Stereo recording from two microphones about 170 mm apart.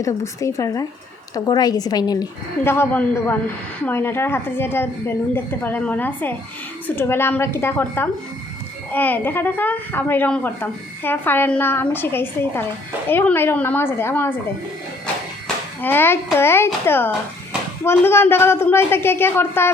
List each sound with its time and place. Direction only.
0.0 s a woman's voice: 20° left (ahead or behind)
15.8 s a woman's voice: 10° left (ahead or behind)